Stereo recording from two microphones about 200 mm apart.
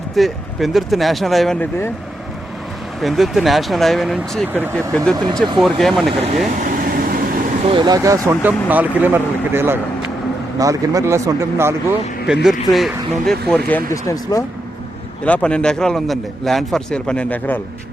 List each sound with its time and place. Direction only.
0.2 s a man's voice: centre (ahead or behind)
3.0 s a man's voice: centre (ahead or behind)
6.6 s vehicle: 45° right (ahead or behind)
7.6 s speech: 25° right (ahead or behind)
12.3 s a man's voice: centre (ahead or behind)
13.9 s a man's voice: 15° left (ahead or behind)